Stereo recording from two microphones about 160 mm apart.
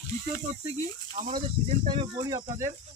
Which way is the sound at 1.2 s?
50° right (ahead or behind).